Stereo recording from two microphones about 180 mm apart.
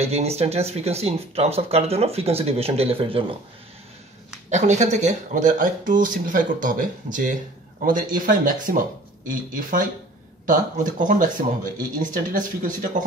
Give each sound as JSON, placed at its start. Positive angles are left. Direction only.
{"t": 0.0, "sound": "speech", "side_deg": -35}
{"t": 4.5, "sound": "speech", "side_deg": -40}